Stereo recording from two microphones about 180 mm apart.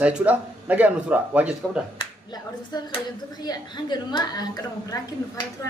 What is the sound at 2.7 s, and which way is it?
A woman's voice, 20° left (ahead or behind).